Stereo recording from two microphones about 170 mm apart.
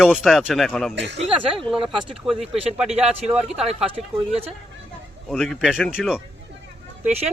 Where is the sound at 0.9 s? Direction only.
90° right.